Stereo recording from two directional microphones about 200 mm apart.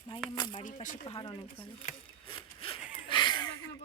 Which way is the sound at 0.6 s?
40° left (ahead or behind).